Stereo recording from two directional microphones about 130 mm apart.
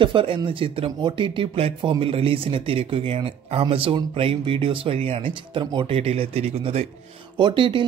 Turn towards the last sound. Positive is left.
turn(degrees=-40)  # may be behind; listen again after turning